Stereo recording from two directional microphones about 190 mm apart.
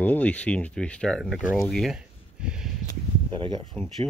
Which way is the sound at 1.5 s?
Centre (ahead or behind).